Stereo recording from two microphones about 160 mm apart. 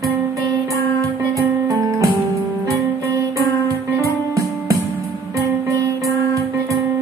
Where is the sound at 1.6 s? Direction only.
20° right (ahead or behind).